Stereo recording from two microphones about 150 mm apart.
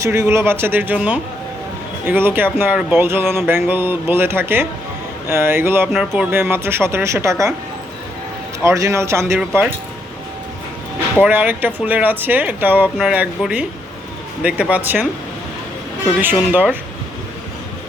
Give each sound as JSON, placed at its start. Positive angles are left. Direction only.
{"t": 0.0, "sound": "speech", "side_deg": -20}
{"t": 8.6, "sound": "a man's voice", "side_deg": -20}
{"t": 9.2, "sound": "speech", "side_deg": 0}
{"t": 11.2, "sound": "speech", "side_deg": -10}
{"t": 16.2, "sound": "speech", "side_deg": -15}